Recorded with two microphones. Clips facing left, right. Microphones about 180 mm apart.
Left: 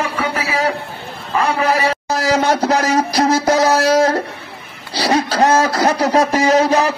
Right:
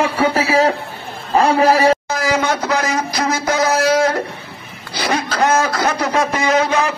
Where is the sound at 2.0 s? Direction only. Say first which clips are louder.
Left 2 dB; 35° left (ahead or behind).